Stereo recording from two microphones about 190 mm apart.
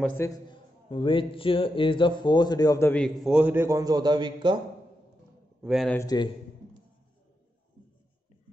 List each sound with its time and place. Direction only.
0.2 s a man's voice: 25° left (ahead or behind)
3.3 s a man's voice: 5° right (ahead or behind); by 4.6 s 25° right (ahead or behind)
5.6 s speech: 5° right (ahead or behind)
5.9 s a man's voice: 15° left (ahead or behind)